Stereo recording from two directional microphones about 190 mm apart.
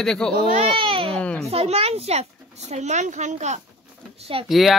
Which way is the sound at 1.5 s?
30° right (ahead or behind).